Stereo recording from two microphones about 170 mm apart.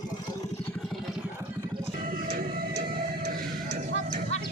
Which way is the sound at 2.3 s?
60° right (ahead or behind).